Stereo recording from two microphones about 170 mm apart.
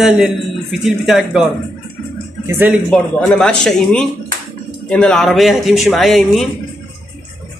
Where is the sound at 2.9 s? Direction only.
5° left (ahead or behind).